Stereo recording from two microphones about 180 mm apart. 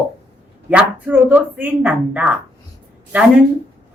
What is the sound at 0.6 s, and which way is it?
Speech, 5° right (ahead or behind).